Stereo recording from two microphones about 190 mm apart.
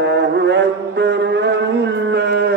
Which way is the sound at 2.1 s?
60° right (ahead or behind).